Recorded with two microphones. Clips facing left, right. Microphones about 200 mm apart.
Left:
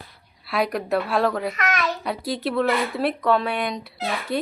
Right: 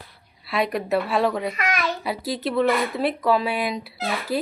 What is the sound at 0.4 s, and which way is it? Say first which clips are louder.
Speech: even; centre (ahead or behind).